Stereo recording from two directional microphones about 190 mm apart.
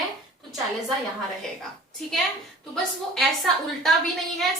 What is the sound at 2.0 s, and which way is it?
A woman's voice, centre (ahead or behind).